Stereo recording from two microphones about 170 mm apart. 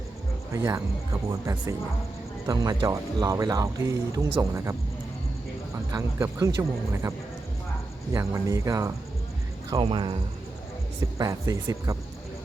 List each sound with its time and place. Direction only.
0.5 s speech: 20° right (ahead or behind)
5.9 s speech: 15° right (ahead or behind)
8.1 s speech: 20° right (ahead or behind)
11.2 s speech: 20° right (ahead or behind)